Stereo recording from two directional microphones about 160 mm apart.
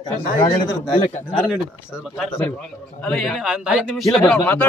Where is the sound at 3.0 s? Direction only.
5° left (ahead or behind).